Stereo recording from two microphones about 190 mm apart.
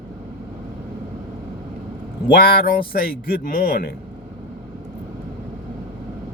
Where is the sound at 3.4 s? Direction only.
60° left (ahead or behind).